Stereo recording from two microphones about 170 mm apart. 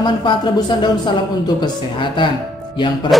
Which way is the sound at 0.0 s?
25° left (ahead or behind).